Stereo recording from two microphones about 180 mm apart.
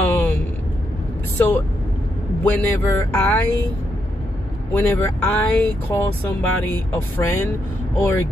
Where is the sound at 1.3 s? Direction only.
10° left (ahead or behind).